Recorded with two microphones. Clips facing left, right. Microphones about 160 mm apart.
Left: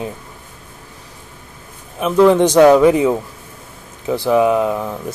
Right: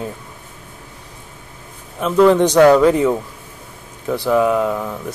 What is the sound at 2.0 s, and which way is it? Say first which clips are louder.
A man's voice: left 1 dB; 15° left (ahead or behind).